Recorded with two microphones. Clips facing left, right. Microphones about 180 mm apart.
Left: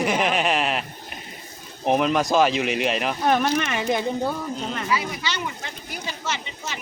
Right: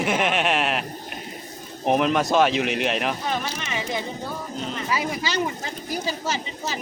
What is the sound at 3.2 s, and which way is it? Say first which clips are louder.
Speech: left 7 dB; 55° left (ahead or behind).